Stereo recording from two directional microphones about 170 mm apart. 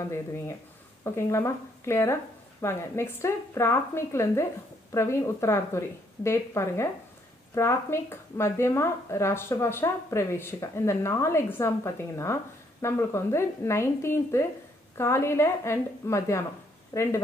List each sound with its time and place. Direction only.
1.0 s speech: 15° left (ahead or behind)